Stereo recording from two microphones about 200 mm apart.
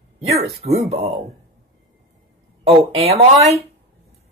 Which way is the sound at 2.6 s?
30° right (ahead or behind).